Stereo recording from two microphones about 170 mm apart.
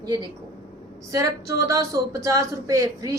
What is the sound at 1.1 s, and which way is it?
A woman's voice, 20° right (ahead or behind).